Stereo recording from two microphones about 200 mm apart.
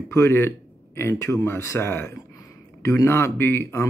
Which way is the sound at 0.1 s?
15° left (ahead or behind).